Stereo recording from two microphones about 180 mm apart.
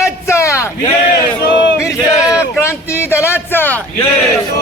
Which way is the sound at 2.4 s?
15° left (ahead or behind).